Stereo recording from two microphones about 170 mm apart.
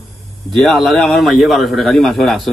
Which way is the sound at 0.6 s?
Centre (ahead or behind).